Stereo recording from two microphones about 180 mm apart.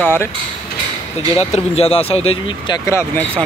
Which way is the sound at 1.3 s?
35° left (ahead or behind).